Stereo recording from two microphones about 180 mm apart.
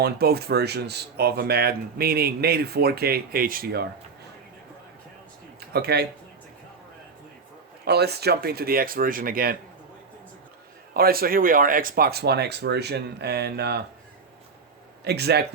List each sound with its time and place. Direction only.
0.0 s speech: 60° right (ahead or behind)
5.5 s speech: 65° right (ahead or behind)
7.9 s speech: 65° right (ahead or behind)
10.9 s speech: 55° right (ahead or behind)
15.0 s speech: 65° right (ahead or behind)